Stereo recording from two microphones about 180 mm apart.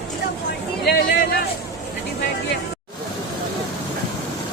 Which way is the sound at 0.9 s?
60° left (ahead or behind).